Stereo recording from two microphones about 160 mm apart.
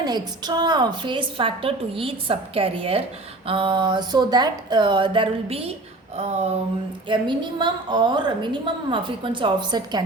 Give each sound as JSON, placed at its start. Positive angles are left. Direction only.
{"t": 0.0, "sound": "a woman's voice", "side_deg": -25}
{"t": 7.1, "sound": "a woman's voice", "side_deg": -30}